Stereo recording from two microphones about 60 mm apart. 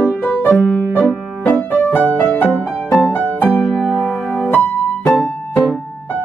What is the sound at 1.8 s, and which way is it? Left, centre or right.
Music, left.